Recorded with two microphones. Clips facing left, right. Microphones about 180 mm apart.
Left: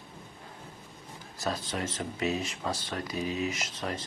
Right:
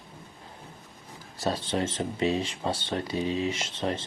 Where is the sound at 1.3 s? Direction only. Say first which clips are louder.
Right 5 dB; 30° right (ahead or behind).